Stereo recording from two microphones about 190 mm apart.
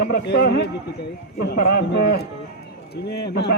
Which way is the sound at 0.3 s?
60° left (ahead or behind).